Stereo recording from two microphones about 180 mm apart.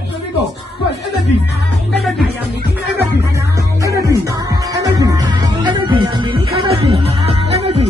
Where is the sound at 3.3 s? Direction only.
15° right (ahead or behind).